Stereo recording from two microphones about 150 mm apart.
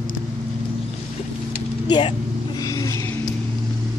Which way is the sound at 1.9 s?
30° left (ahead or behind).